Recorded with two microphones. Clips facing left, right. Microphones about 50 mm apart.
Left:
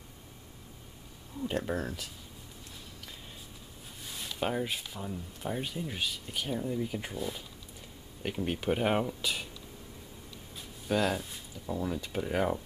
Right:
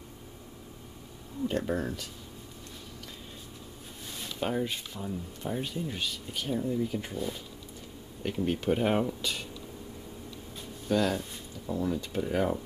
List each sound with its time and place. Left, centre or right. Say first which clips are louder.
1.4 s speech: right 3 dB; centre
4.1 s speech: right 1 dB; centre
10.9 s speech: right 2 dB; centre